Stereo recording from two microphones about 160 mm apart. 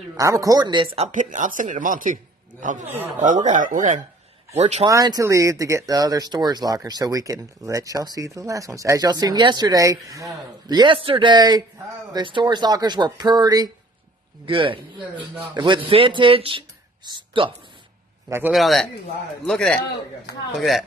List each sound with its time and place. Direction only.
0.2 s speech: 20° right (ahead or behind); by 4.8 s 45° right (ahead or behind)
4.8 s speech: 25° right (ahead or behind)
18.5 s a man's voice: centre (ahead or behind)